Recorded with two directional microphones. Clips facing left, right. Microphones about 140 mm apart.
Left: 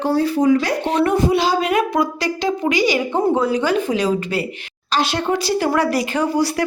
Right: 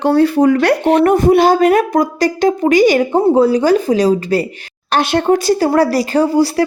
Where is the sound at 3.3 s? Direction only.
35° right (ahead or behind).